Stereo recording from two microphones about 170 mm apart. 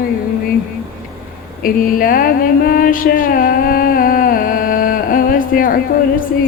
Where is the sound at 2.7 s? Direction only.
60° left (ahead or behind).